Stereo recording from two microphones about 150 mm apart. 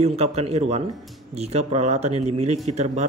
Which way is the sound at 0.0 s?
45° right (ahead or behind).